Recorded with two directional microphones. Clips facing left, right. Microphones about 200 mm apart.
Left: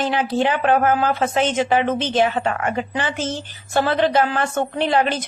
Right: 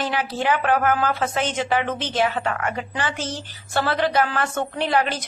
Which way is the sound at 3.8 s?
25° left (ahead or behind).